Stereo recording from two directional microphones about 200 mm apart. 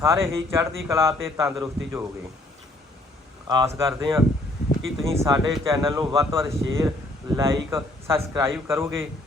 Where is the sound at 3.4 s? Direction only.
20° right (ahead or behind).